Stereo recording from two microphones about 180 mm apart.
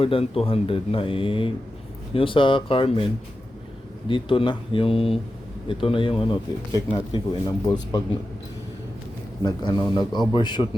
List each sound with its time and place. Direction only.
0.0 s speech: 30° left (ahead or behind)
4.1 s speech: 30° left (ahead or behind)
9.4 s speech: 25° left (ahead or behind)